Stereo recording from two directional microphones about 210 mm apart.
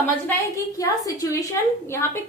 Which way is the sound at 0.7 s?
15° left (ahead or behind).